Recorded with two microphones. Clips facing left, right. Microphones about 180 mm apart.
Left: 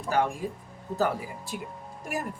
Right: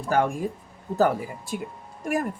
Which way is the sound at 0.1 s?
50° right (ahead or behind).